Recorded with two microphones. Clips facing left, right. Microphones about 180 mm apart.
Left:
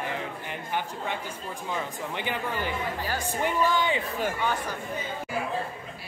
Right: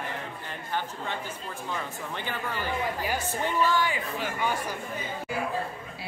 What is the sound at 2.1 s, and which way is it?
Speech, 15° left (ahead or behind).